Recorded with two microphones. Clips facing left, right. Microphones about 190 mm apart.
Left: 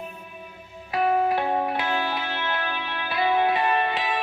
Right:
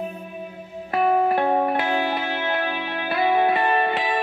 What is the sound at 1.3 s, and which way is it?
Music, 55° right (ahead or behind).